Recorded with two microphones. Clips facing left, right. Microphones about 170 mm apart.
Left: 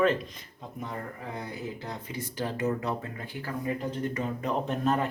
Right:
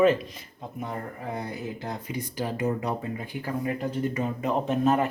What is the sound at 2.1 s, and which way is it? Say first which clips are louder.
Speech: right 2 dB; 15° right (ahead or behind).